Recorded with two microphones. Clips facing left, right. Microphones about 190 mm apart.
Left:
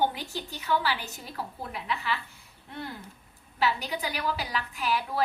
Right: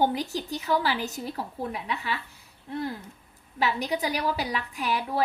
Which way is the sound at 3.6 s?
40° right (ahead or behind).